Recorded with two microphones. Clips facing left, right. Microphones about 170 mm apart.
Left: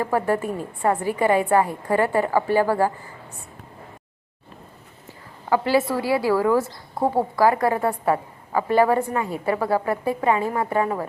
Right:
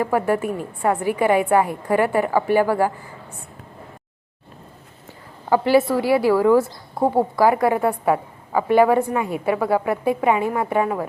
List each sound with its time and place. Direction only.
0.0 s speech: 10° right (ahead or behind)
6.0 s speech: 20° right (ahead or behind)